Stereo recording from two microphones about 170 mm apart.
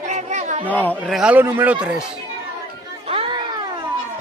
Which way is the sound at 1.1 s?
5° right (ahead or behind).